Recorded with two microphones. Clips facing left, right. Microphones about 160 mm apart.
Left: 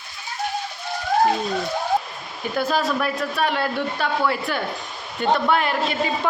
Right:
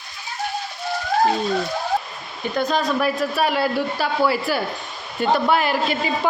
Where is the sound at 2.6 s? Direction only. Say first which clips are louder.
Right 1 dB; 5° left (ahead or behind).